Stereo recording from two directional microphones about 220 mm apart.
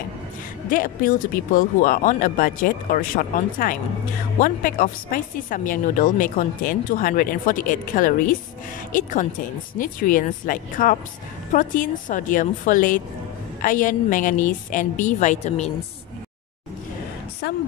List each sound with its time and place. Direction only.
0.7 s a woman's voice: 40° left (ahead or behind)
17.4 s a woman's voice: 50° left (ahead or behind)